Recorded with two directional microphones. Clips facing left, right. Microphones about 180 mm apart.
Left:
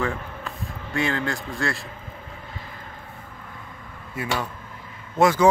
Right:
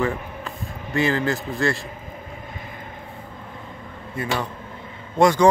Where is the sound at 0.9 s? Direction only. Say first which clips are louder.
Right 4 dB; centre (ahead or behind).